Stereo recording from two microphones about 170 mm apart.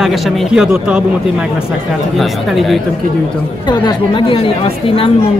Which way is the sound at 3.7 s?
25° left (ahead or behind).